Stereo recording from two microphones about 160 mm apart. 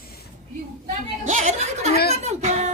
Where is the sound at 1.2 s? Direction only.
45° right (ahead or behind).